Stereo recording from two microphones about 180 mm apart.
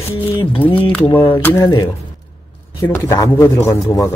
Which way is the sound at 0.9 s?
15° left (ahead or behind).